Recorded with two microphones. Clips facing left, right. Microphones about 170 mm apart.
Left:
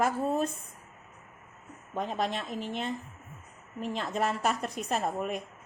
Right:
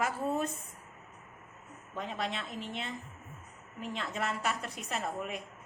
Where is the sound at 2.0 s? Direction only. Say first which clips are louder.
Left 5 dB; 45° left (ahead or behind).